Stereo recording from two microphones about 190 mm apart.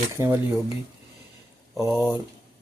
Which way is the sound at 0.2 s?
15° right (ahead or behind).